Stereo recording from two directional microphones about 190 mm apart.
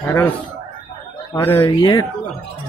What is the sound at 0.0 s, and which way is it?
Speech, 15° left (ahead or behind).